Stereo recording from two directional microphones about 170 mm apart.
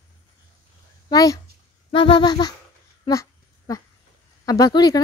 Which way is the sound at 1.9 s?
30° left (ahead or behind).